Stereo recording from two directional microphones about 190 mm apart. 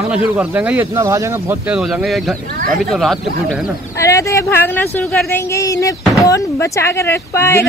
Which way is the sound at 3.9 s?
15° left (ahead or behind).